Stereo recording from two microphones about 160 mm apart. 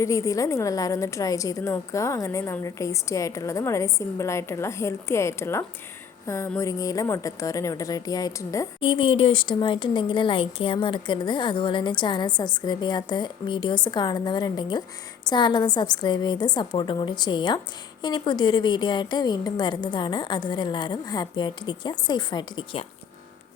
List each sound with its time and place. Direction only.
0.0 s speech: 20° left (ahead or behind)
8.8 s speech: 35° left (ahead or behind)